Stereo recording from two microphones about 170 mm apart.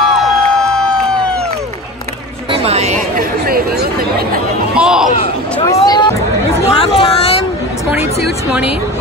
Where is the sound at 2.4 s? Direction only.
35° right (ahead or behind).